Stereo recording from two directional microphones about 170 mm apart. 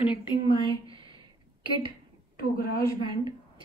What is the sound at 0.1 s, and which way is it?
Speech, 25° left (ahead or behind).